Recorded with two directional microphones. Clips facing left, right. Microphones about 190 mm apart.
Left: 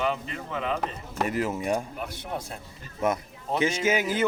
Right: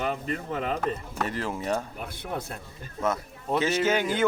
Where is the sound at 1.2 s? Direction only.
10° left (ahead or behind).